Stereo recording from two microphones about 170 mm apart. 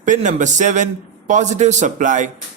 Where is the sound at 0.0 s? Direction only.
45° right (ahead or behind).